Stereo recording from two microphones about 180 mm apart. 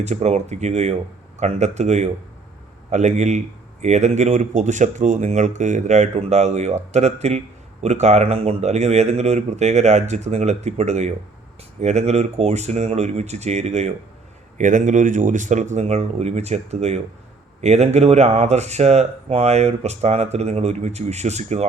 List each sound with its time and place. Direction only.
0.0 s speech: 40° right (ahead or behind)